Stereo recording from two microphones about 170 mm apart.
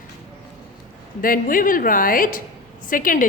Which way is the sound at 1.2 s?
55° left (ahead or behind).